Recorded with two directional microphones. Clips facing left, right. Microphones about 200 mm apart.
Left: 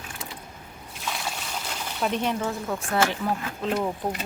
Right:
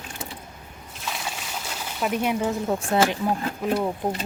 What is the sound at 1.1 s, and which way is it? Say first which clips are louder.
Water: even; centre (ahead or behind).